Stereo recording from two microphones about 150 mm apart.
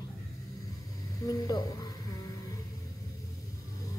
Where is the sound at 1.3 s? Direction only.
25° left (ahead or behind).